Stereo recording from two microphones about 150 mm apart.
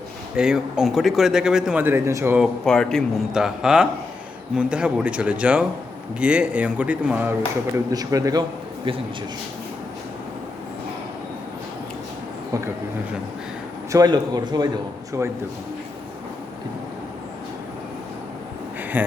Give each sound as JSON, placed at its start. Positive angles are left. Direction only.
{"t": 0.3, "sound": "speech", "side_deg": -5}
{"t": 2.4, "sound": "speech", "side_deg": 5}
{"t": 7.9, "sound": "a man's voice", "side_deg": -25}
{"t": 13.9, "sound": "a man's voice", "side_deg": -25}
{"t": 18.8, "sound": "a sound", "side_deg": -10}